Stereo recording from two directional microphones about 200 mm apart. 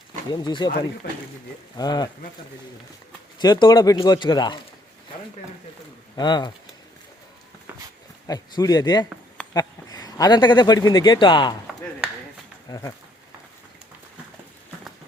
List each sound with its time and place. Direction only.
0.3 s speech: 20° left (ahead or behind)
1.7 s speech: 20° left (ahead or behind)
3.4 s speech: 20° left (ahead or behind)
6.1 s speech: 20° left (ahead or behind)
8.3 s speech: 20° left (ahead or behind)